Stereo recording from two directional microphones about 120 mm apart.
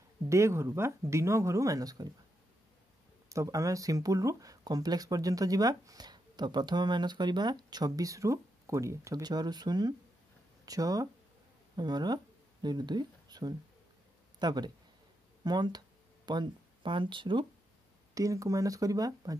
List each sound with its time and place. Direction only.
0.3 s speech: 25° right (ahead or behind)
3.3 s speech: 25° right (ahead or behind); by 17.5 s 40° right (ahead or behind)
18.1 s speech: 25° right (ahead or behind)